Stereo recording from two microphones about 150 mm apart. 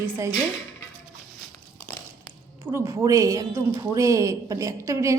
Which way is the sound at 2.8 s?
20° right (ahead or behind).